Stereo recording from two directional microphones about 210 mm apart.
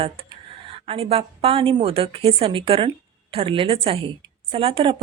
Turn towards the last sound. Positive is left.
turn(degrees=-25)  # may be behind; listen again after turning